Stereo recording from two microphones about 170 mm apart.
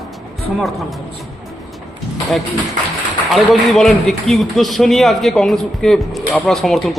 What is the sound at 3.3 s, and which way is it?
A man's voice, centre (ahead or behind).